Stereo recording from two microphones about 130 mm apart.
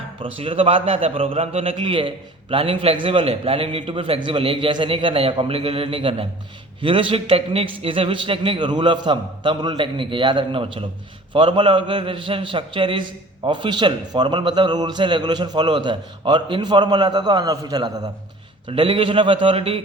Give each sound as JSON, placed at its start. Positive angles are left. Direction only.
{"t": 0.2, "sound": "a man's voice", "side_deg": -45}
{"t": 18.7, "sound": "a man's voice", "side_deg": -40}